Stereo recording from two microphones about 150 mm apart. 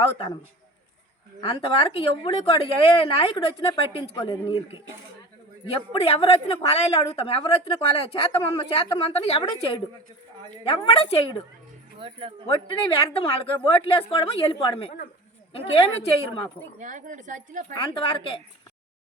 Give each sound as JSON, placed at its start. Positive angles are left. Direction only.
{"t": 1.4, "sound": "a woman's voice", "side_deg": 35}
{"t": 5.9, "sound": "a woman's voice", "side_deg": 40}
{"t": 11.9, "sound": "speech", "side_deg": -35}
{"t": 12.5, "sound": "a woman's voice", "side_deg": 35}
{"t": 16.8, "sound": "speech", "side_deg": -60}
{"t": 17.7, "sound": "a woman's voice", "side_deg": 35}